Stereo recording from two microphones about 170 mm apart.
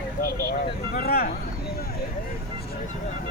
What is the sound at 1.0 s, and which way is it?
Speech, 60° left (ahead or behind).